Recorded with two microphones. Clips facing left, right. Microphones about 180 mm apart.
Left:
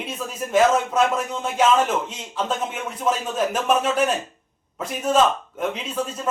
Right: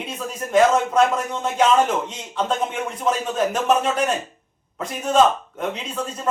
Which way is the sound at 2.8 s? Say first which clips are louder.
Right 1 dB; 5° left (ahead or behind).